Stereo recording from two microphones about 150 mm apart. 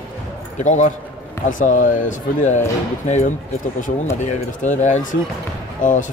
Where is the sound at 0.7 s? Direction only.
55° left (ahead or behind).